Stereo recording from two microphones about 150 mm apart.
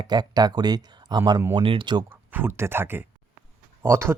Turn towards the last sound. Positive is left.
turn(degrees=-15)  # may be behind; listen again after turning